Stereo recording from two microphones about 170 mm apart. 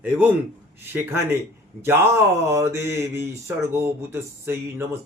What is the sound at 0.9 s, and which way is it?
Speech, 15° right (ahead or behind).